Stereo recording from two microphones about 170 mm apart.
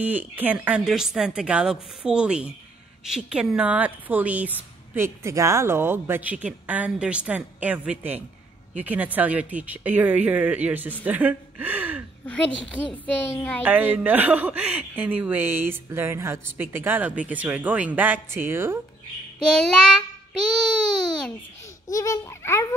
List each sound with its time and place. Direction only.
0.0 s a woman's voice: 10° right (ahead or behind)
12.3 s a child's voice: 10° left (ahead or behind)
13.7 s speech: 10° right (ahead or behind)
19.4 s a woman's voice: 5° left (ahead or behind)
21.8 s a child's voice: 20° left (ahead or behind)